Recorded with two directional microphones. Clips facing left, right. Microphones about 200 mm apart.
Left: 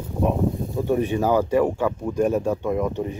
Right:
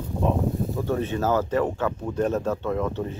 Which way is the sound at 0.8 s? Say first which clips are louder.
Left 7 dB; 15° left (ahead or behind).